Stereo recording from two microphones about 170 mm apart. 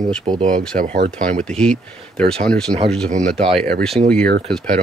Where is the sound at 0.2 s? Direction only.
35° right (ahead or behind).